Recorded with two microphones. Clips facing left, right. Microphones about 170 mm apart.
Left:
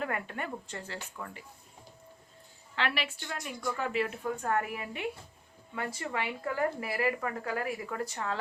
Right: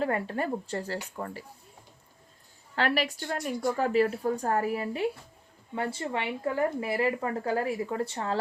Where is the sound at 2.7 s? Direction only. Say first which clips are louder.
Right 6 dB; 40° right (ahead or behind).